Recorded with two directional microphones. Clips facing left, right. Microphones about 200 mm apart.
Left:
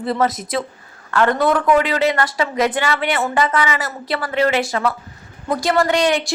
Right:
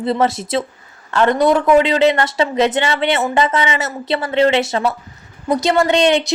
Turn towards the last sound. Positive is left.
turn(degrees=-25)  # may be behind; listen again after turning